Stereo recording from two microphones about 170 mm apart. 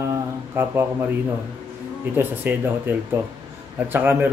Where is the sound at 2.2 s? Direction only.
10° right (ahead or behind).